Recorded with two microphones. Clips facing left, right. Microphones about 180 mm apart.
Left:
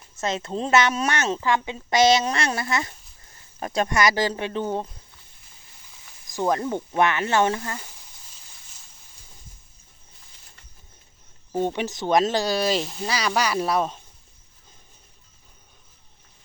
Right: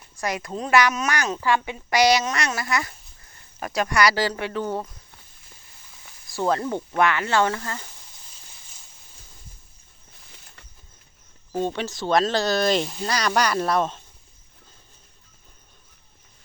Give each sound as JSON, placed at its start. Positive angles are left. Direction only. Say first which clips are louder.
{"t": 0.2, "sound": "a woman's voice", "louder": "left 2 dB", "side_deg": 25}
{"t": 6.3, "sound": "a woman's voice", "louder": "even", "side_deg": 15}
{"t": 11.5, "sound": "speech", "louder": "left 1 dB", "side_deg": 15}